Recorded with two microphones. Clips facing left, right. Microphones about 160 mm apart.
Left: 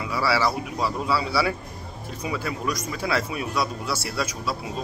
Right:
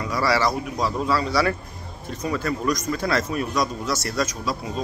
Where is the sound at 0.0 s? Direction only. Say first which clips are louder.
Right 2 dB; 5° left (ahead or behind).